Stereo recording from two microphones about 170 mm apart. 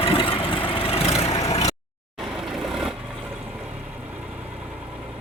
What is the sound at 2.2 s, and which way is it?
Vehicle, centre (ahead or behind).